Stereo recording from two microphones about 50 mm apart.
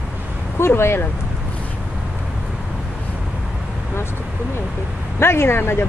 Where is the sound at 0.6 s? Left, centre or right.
Left.